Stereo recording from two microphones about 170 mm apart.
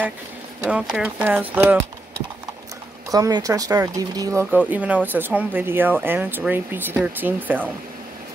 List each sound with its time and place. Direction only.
0.7 s speech: 5° right (ahead or behind)
3.1 s speech: 20° right (ahead or behind)